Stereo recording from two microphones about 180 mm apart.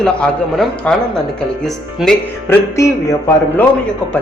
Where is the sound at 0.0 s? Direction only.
5° left (ahead or behind).